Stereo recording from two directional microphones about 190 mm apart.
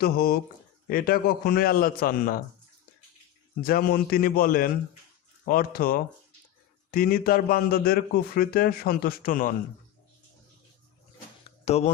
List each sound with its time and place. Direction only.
0.0 s a man's voice: 50° left (ahead or behind)
3.6 s a man's voice: 50° left (ahead or behind)
11.4 s a sound: 35° left (ahead or behind)